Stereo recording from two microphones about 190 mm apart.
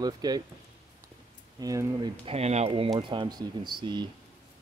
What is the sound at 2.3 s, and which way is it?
Speech, 35° right (ahead or behind).